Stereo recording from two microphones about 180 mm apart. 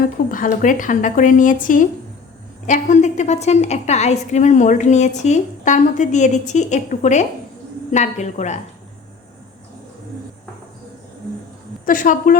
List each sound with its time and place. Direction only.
0.3 s a woman's voice: 50° left (ahead or behind)
11.9 s speech: 50° left (ahead or behind)